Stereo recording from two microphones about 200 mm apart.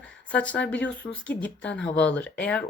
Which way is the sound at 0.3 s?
5° left (ahead or behind).